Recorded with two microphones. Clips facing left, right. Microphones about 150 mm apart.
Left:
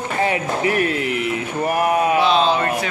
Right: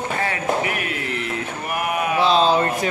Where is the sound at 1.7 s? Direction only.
35° left (ahead or behind).